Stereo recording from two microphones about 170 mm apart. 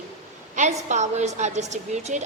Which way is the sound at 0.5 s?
45° right (ahead or behind).